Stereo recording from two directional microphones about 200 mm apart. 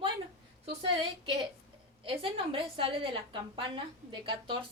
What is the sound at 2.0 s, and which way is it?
A woman's voice, 25° right (ahead or behind).